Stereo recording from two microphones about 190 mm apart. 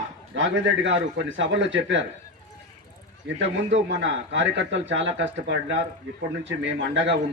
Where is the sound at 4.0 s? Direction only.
70° right (ahead or behind).